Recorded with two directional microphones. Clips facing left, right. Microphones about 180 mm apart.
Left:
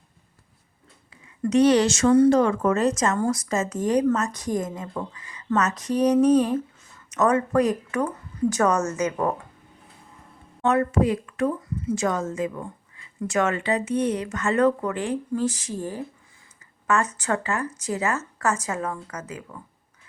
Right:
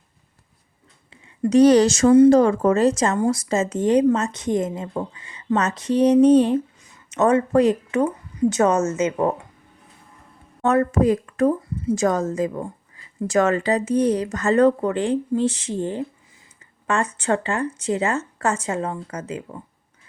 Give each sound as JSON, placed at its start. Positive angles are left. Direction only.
{"t": 1.1, "sound": "a woman's voice", "side_deg": -25}
{"t": 10.6, "sound": "a woman's voice", "side_deg": -45}